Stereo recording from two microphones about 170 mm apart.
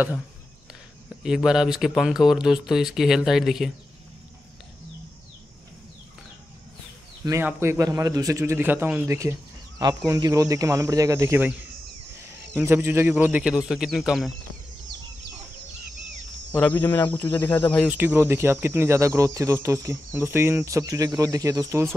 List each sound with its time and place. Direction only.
1.2 s speech: 5° right (ahead or behind)
7.2 s speech: 15° right (ahead or behind)
12.5 s speech: 15° right (ahead or behind)
16.5 s speech: 10° left (ahead or behind)
17.8 s speech: 10° right (ahead or behind)